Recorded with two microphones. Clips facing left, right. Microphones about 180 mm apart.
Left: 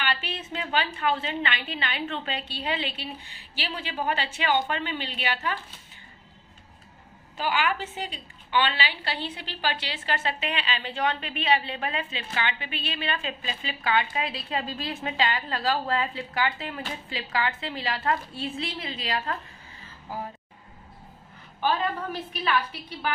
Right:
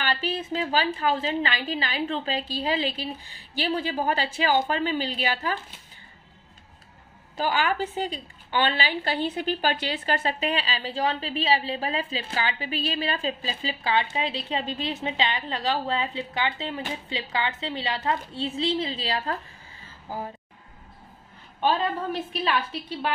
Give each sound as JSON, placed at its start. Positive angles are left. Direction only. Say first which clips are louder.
{"t": 0.0, "sound": "a woman's voice", "louder": "right 3 dB", "side_deg": -40}
{"t": 7.3, "sound": "a woman's voice", "louder": "right 2 dB", "side_deg": -40}
{"t": 21.5, "sound": "a woman's voice", "louder": "right 2 dB", "side_deg": -25}